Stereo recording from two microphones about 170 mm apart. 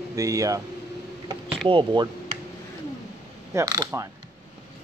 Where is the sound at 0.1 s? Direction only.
20° right (ahead or behind).